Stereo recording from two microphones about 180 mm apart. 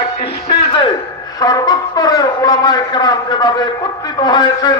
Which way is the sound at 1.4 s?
20° left (ahead or behind).